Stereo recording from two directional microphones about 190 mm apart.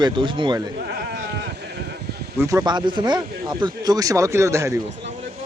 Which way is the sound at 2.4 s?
15° right (ahead or behind).